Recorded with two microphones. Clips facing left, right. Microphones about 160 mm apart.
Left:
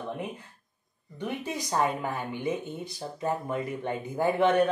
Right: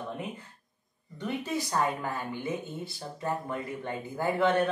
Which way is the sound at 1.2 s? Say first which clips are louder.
Right 1 dB; 15° left (ahead or behind).